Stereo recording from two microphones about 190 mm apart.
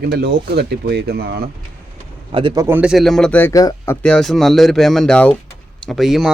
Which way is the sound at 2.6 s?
10° right (ahead or behind).